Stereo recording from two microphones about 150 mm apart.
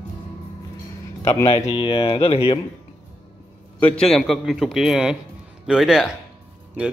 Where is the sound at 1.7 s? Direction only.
35° left (ahead or behind).